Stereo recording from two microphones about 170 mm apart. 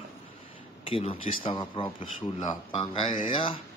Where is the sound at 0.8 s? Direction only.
35° left (ahead or behind).